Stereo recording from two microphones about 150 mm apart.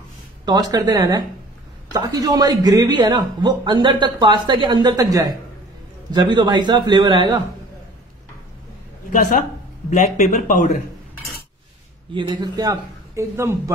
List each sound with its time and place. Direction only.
0.5 s a man's voice: 25° right (ahead or behind)
9.1 s speech: 60° left (ahead or behind)
12.1 s a man's voice: 30° right (ahead or behind)